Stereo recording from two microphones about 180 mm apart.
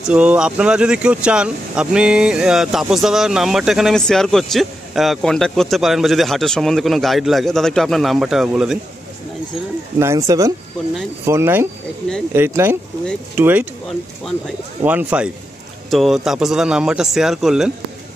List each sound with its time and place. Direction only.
0.0 s speech: 5° right (ahead or behind)
9.9 s speech: 15° right (ahead or behind)
14.8 s speech: 10° right (ahead or behind)